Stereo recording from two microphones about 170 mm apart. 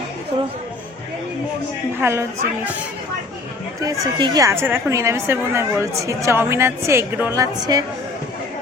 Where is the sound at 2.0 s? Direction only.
15° right (ahead or behind).